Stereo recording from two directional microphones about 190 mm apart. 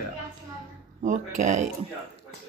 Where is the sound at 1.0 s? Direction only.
40° right (ahead or behind).